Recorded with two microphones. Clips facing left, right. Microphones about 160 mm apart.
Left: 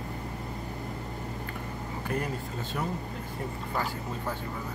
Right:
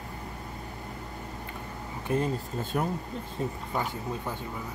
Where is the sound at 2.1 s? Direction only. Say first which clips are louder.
Right 5 dB; 25° right (ahead or behind).